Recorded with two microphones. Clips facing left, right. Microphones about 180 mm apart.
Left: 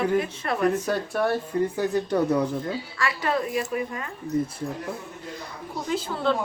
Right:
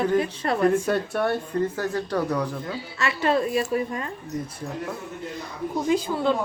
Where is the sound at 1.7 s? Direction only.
15° left (ahead or behind).